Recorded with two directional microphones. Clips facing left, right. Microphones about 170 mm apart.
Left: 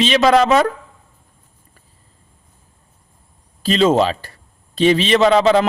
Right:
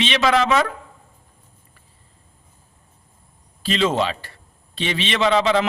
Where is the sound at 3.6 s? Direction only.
40° left (ahead or behind).